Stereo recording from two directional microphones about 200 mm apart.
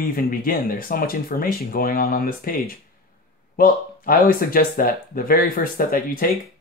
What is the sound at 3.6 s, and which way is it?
Speech, 45° left (ahead or behind).